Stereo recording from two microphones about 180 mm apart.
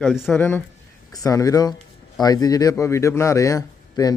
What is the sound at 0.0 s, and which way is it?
Speech, centre (ahead or behind).